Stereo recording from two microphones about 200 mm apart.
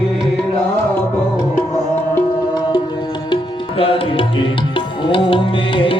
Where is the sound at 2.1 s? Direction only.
20° left (ahead or behind).